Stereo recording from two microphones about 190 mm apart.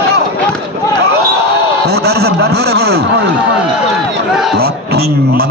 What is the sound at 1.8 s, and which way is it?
A man's voice, 60° right (ahead or behind).